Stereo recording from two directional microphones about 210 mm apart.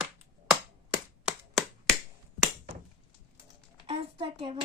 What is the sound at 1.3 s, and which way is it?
Clapping, centre (ahead or behind).